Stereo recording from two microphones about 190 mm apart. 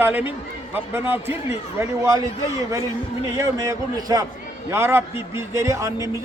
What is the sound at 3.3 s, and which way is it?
A man's voice, 15° right (ahead or behind).